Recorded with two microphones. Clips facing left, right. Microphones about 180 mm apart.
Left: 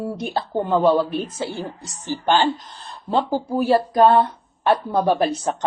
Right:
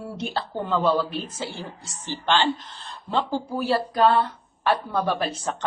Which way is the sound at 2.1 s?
40° left (ahead or behind).